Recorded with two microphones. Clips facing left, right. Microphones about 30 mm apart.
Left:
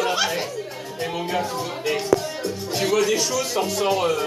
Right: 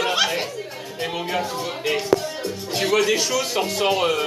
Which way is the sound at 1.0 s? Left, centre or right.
Centre.